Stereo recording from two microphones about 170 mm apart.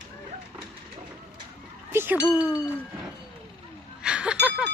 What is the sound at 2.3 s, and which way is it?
Speech, 5° right (ahead or behind).